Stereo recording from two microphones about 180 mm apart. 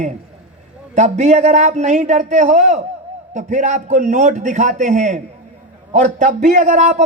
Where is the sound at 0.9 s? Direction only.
40° right (ahead or behind).